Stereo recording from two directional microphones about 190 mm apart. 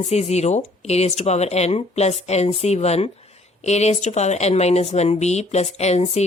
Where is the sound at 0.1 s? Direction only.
35° left (ahead or behind).